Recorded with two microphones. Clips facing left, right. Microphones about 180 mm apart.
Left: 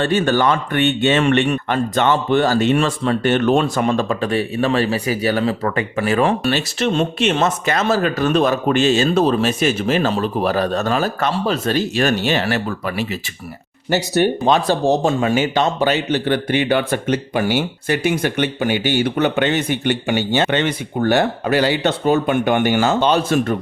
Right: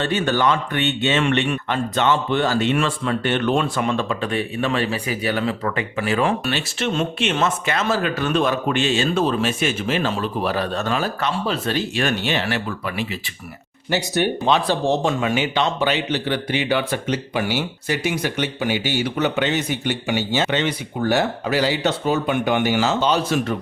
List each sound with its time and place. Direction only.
0.0 s speech: 50° left (ahead or behind)
2.7 s speech: 35° left (ahead or behind)
15.4 s speech: 45° left (ahead or behind)